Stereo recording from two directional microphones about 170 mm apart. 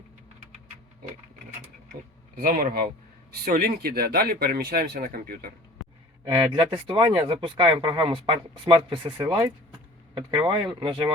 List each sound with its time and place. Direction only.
2.3 s speech: 55° right (ahead or behind)
6.2 s speech: 30° right (ahead or behind)
10.8 s speech: 30° right (ahead or behind)